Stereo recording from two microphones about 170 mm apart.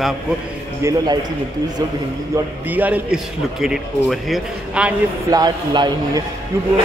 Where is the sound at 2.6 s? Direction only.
10° right (ahead or behind).